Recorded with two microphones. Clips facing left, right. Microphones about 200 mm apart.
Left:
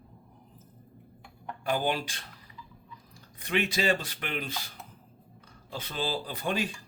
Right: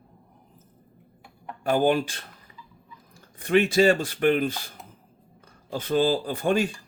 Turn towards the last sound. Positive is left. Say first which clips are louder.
# right 7 dB
turn(degrees=-50)  # may be behind; listen again after turning